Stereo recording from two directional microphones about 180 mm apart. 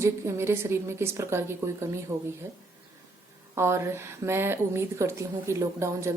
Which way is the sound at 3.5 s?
15° right (ahead or behind).